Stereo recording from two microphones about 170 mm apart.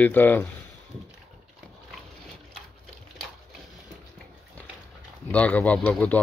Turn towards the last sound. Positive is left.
turn(degrees=10)  # may be behind; listen again after turning